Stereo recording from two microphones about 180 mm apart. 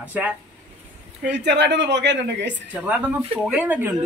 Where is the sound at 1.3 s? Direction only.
70° right (ahead or behind).